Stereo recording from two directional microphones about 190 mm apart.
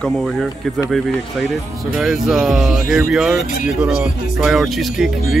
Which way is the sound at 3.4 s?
45° left (ahead or behind).